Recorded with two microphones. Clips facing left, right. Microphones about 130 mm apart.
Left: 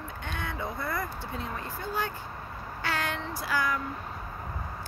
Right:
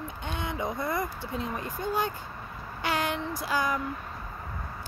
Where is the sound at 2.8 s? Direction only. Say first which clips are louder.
Right 3 dB; 15° right (ahead or behind).